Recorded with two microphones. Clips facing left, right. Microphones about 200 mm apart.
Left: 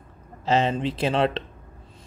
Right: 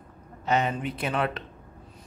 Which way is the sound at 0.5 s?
30° left (ahead or behind).